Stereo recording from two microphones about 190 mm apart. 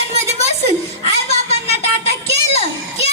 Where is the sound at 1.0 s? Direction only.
30° left (ahead or behind).